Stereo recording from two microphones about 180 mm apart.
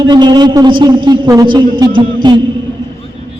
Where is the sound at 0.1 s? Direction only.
25° right (ahead or behind).